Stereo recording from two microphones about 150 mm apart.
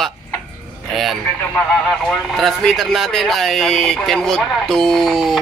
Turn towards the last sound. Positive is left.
turn(degrees=0)  # may be behind; listen again after turning